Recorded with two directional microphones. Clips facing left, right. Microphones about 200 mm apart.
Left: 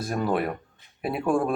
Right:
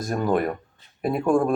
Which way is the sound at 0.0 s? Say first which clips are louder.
Right 3 dB; 5° left (ahead or behind).